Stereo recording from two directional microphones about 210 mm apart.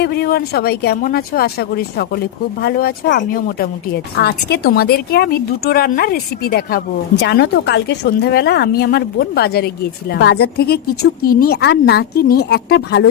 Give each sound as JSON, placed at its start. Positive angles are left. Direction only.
{"t": 0.0, "sound": "a woman's voice", "side_deg": 50}